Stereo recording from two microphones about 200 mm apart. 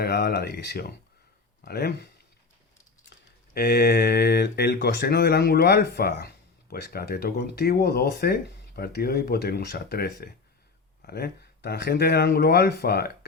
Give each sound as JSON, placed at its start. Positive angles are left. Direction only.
{"t": 0.0, "sound": "speech", "side_deg": 55}